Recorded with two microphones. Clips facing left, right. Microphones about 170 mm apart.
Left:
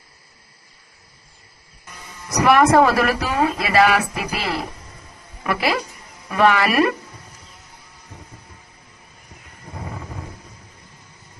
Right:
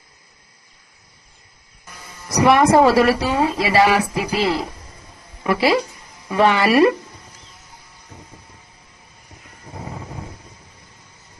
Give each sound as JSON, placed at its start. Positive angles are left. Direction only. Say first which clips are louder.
{"t": 2.4, "sound": "a woman's voice", "louder": "right 1 dB", "side_deg": -30}